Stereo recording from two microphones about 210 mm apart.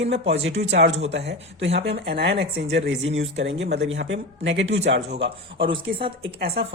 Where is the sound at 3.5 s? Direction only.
55° right (ahead or behind).